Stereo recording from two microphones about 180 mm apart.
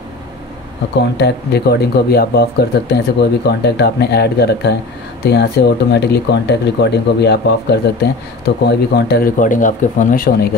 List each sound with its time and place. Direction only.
1.0 s speech: 70° left (ahead or behind); by 10.5 s 55° left (ahead or behind)